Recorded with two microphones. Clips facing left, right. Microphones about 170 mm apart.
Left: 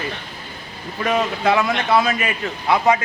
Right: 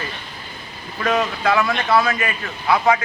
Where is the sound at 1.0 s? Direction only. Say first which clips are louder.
Even; 20° left (ahead or behind).